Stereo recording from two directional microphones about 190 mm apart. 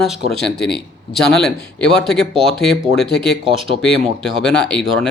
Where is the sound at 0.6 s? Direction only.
60° left (ahead or behind).